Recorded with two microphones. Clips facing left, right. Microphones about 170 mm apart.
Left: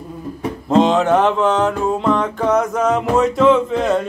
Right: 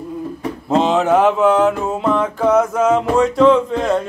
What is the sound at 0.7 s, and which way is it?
Music, 5° right (ahead or behind).